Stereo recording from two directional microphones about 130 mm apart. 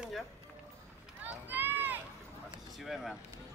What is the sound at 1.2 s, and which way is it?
Run, 15° right (ahead or behind).